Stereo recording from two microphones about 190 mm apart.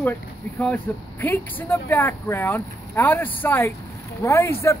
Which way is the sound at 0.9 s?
10° left (ahead or behind).